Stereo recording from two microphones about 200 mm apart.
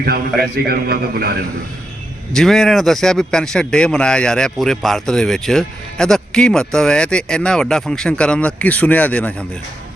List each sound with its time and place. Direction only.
0.5 s speech: 50° right (ahead or behind)
2.3 s a man's voice: centre (ahead or behind)